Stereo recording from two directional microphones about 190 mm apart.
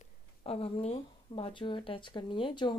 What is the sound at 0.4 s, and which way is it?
Speech, 30° left (ahead or behind).